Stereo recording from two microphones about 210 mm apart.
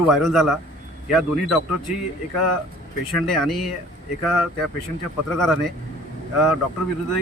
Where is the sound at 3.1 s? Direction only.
Centre (ahead or behind).